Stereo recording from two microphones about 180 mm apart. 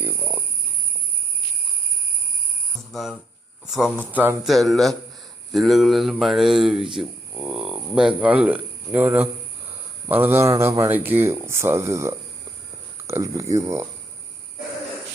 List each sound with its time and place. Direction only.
0.0 s a sound: 10° right (ahead or behind)
2.9 s speech: centre (ahead or behind)
4.4 s speech: centre (ahead or behind); by 13.8 s 15° right (ahead or behind)